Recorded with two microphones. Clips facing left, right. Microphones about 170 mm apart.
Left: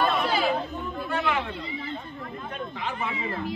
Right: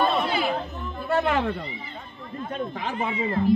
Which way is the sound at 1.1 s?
45° right (ahead or behind).